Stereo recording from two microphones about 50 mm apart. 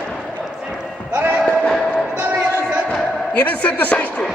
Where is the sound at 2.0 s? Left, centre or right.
Right.